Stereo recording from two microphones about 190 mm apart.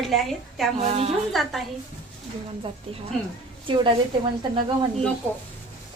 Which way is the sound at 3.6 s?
25° right (ahead or behind).